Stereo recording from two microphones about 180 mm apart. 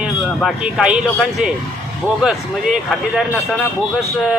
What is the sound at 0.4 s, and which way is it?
Speech, 5° right (ahead or behind).